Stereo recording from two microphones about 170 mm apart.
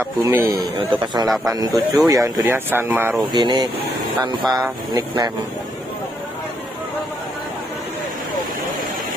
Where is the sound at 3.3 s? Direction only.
25° right (ahead or behind).